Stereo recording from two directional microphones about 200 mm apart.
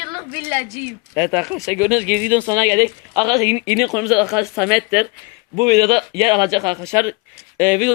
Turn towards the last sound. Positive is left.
turn(degrees=-10)  # may be behind; listen again after turning